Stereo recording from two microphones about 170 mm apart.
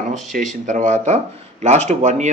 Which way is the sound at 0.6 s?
45° right (ahead or behind).